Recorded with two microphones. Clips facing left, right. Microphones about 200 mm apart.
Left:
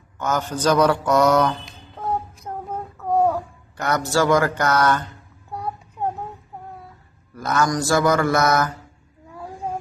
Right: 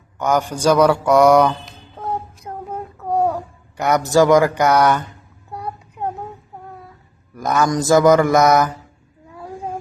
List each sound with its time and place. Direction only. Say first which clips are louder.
0.2 s mantra: right 4 dB; 15° right (ahead or behind)
3.8 s mantra: right 6 dB; 15° right (ahead or behind)
7.3 s mantra: right 3 dB; 15° right (ahead or behind)